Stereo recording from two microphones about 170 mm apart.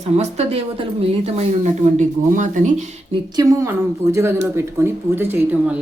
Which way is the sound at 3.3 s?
20° right (ahead or behind).